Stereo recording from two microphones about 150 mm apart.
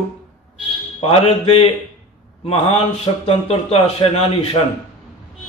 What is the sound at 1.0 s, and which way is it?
Speech, 40° left (ahead or behind).